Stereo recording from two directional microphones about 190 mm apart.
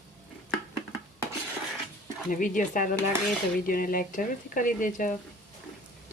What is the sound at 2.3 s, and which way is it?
Speech, 45° left (ahead or behind).